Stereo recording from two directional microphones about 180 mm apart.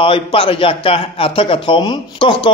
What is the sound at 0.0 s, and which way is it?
A man's voice, 30° left (ahead or behind).